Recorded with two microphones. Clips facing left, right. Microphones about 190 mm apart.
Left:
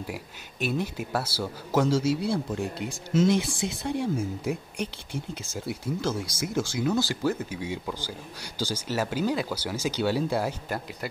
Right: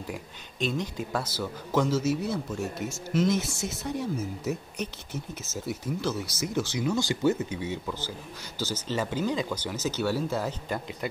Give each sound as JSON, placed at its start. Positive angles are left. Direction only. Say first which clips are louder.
{"t": 0.0, "sound": "speech", "louder": "left 1 dB", "side_deg": 5}